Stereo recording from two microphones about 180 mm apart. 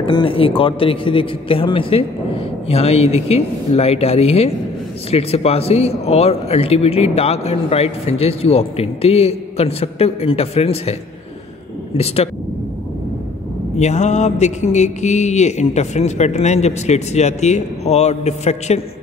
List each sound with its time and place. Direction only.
0.0 s a man's voice: 30° left (ahead or behind)
13.7 s speech: 40° left (ahead or behind)